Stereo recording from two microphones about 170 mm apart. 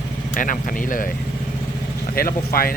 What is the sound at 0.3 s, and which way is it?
Speech, 50° left (ahead or behind).